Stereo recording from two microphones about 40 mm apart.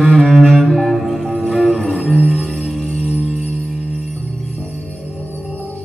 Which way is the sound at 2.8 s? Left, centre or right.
Centre.